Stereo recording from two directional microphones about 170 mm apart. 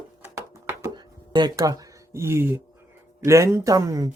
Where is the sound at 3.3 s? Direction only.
15° right (ahead or behind).